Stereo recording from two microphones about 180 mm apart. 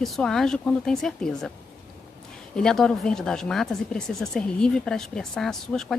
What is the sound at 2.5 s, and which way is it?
Speech, 5° left (ahead or behind).